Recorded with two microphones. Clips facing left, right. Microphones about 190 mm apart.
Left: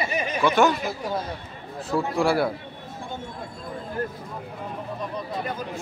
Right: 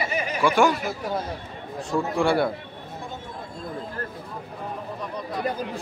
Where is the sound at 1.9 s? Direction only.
5° left (ahead or behind).